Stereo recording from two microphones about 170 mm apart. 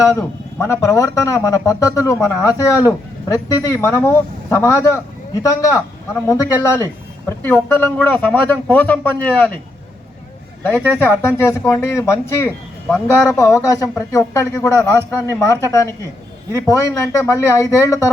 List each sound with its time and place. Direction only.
0.6 s speech: 15° left (ahead or behind)
10.6 s a woman's voice: 10° left (ahead or behind)